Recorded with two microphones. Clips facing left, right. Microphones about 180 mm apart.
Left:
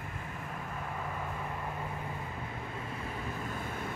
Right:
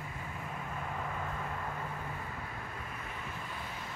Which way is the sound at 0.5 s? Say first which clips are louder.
Even; centre (ahead or behind).